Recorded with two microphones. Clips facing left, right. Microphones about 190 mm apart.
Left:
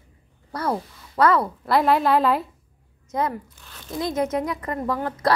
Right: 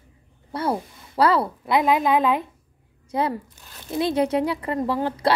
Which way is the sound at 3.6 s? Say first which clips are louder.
Right 4 dB; 20° right (ahead or behind).